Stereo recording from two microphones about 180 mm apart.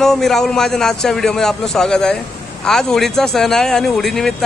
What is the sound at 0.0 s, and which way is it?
A man's voice, centre (ahead or behind).